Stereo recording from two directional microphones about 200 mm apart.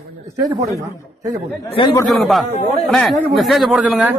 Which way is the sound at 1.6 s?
25° left (ahead or behind).